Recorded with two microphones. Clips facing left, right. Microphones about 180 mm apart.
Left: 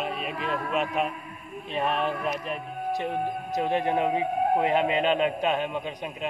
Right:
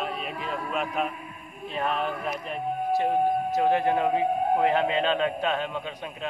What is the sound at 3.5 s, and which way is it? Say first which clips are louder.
A man's voice: even; 20° left (ahead or behind).